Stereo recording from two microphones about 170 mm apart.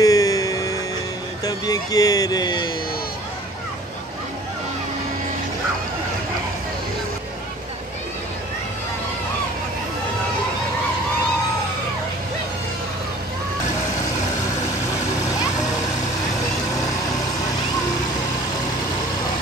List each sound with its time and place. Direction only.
0.0 s music: 20° left (ahead or behind)
1.4 s speech: 20° left (ahead or behind)